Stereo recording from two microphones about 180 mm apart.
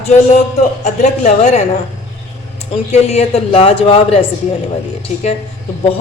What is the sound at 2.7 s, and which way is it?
A woman's voice, 35° left (ahead or behind).